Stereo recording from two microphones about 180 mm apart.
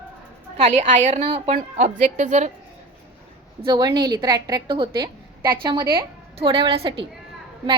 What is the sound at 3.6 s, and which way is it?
A woman's voice, 25° right (ahead or behind).